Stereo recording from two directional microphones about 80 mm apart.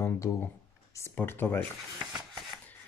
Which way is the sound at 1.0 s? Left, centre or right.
Left.